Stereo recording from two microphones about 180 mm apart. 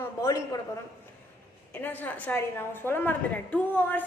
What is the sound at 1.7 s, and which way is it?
A woman's voice, 10° left (ahead or behind).